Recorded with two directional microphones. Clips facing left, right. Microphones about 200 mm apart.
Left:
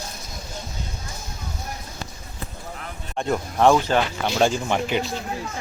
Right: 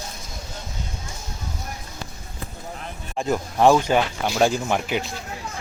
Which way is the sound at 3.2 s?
Centre (ahead or behind).